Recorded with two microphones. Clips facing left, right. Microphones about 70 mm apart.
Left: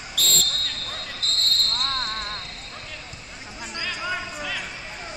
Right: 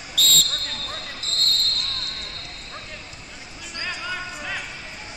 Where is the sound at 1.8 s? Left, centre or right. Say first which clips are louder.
Left 6 dB; left.